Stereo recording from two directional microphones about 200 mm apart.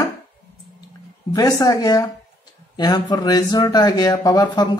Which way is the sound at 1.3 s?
15° left (ahead or behind).